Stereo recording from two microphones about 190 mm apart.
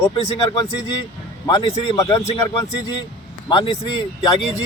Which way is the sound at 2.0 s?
15° left (ahead or behind).